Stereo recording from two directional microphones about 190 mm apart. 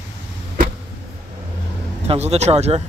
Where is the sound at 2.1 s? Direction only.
35° right (ahead or behind).